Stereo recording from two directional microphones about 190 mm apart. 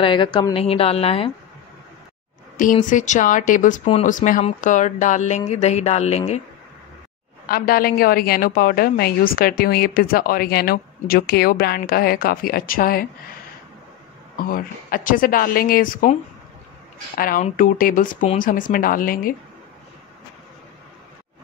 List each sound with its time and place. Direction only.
0.0 s a woman's voice: 25° left (ahead or behind)
2.5 s speech: 45° left (ahead or behind)
7.4 s a woman's voice: 50° left (ahead or behind)
14.3 s a woman's voice: 50° left (ahead or behind)
17.2 s a woman's voice: 45° left (ahead or behind)